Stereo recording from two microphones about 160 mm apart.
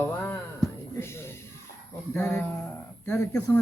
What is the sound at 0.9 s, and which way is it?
Music, 15° left (ahead or behind).